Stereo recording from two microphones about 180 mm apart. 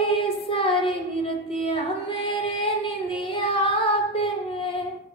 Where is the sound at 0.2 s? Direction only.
30° left (ahead or behind).